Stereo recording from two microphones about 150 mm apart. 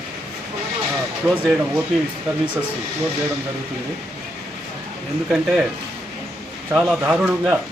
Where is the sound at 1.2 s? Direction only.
10° right (ahead or behind).